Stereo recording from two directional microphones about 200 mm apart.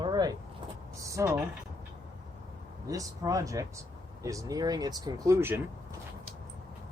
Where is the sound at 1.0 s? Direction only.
15° right (ahead or behind).